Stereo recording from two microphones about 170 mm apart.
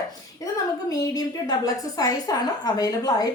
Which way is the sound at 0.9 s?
20° left (ahead or behind).